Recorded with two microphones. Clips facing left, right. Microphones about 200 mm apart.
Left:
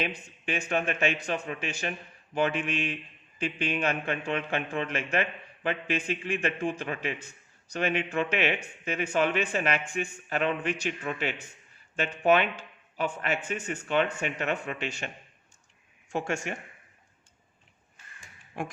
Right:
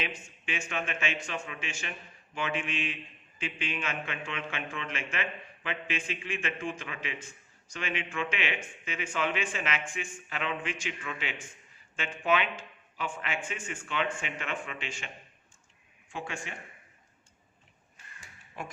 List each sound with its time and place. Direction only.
0.0 s speech: 35° left (ahead or behind)
7.7 s a man's voice: 40° left (ahead or behind)
15.0 s a man's voice: 50° left (ahead or behind)
18.2 s crow: 50° left (ahead or behind)